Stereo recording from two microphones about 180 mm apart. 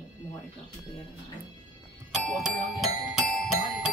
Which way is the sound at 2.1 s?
Centre (ahead or behind).